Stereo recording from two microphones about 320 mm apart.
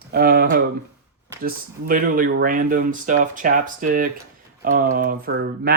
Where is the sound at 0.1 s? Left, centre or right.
Right.